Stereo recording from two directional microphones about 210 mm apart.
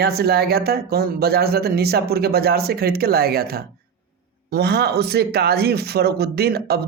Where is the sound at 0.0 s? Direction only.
50° right (ahead or behind).